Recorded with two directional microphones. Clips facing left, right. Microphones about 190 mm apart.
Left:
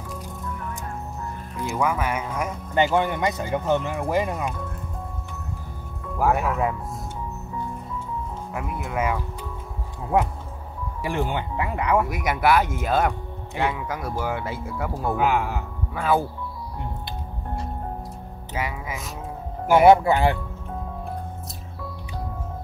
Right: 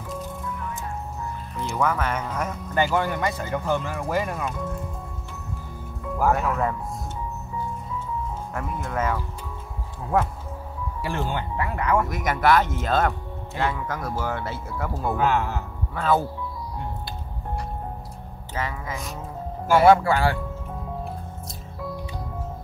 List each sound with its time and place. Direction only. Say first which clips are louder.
1.6 s speech: even; 10° left (ahead or behind)
2.7 s speech: left 2 dB; 20° left (ahead or behind)
6.1 s speech: even; 10° left (ahead or behind)
8.5 s speech: left 1 dB; 10° left (ahead or behind)
11.0 s speech: left 2 dB; 15° left (ahead or behind)
18.5 s speech: even; 10° left (ahead or behind)